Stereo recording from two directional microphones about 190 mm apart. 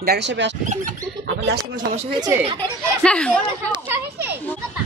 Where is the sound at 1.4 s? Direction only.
55° right (ahead or behind).